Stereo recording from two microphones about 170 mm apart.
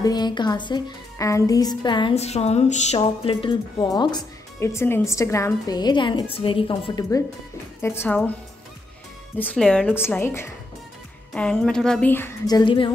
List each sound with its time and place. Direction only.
0.0 s a woman's voice: 25° left (ahead or behind); by 3.0 s 40° left (ahead or behind)
3.0 s a woman's voice: 30° left (ahead or behind)
7.8 s a woman's voice: 15° left (ahead or behind)
9.4 s a woman's voice: 5° left (ahead or behind)
12.4 s a woman's voice: 25° left (ahead or behind)